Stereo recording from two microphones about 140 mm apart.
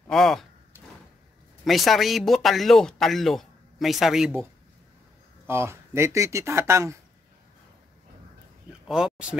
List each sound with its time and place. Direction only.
0.1 s speech: centre (ahead or behind)
1.6 s speech: centre (ahead or behind)
5.5 s speech: 20° right (ahead or behind)
8.8 s speech: 5° right (ahead or behind)